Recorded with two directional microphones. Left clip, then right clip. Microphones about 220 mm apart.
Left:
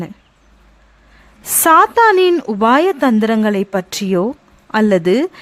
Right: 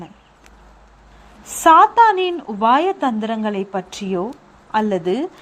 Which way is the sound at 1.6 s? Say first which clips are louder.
Left 1 dB; 40° left (ahead or behind).